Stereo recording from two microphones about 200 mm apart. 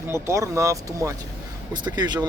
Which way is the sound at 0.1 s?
15° right (ahead or behind).